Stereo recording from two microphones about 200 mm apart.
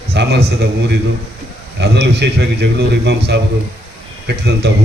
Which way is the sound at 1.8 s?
55° right (ahead or behind).